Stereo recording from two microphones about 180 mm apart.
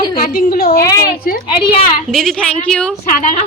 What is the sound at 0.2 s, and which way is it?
Speech, 55° left (ahead or behind).